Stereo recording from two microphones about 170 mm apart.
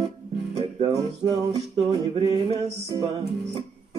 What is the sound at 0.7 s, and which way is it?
Music, 30° right (ahead or behind).